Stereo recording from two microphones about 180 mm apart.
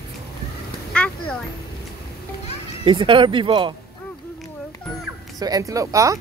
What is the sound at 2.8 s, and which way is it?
Speech, 30° right (ahead or behind).